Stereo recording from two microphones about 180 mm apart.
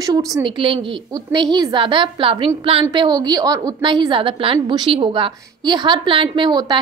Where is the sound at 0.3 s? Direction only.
25° right (ahead or behind).